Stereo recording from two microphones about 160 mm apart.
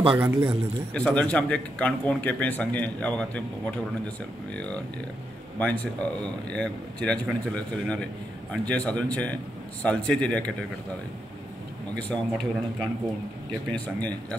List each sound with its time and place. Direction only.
0.0 s a man's voice: 35° right (ahead or behind)
0.9 s a man's voice: 10° left (ahead or behind)
12.0 s a man's voice: 5° left (ahead or behind)
13.7 s a man's voice: 5° left (ahead or behind)